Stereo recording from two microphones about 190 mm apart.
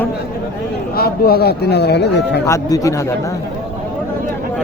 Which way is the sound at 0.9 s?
50° left (ahead or behind).